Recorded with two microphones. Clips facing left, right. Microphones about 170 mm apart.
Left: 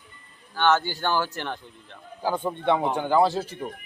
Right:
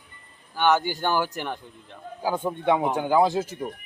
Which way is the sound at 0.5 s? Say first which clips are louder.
Right 1 dB; 15° right (ahead or behind).